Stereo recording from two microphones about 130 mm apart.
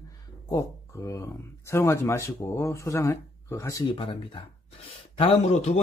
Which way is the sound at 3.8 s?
40° left (ahead or behind).